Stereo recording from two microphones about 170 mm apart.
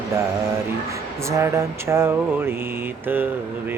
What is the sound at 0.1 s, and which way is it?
Music, 15° right (ahead or behind).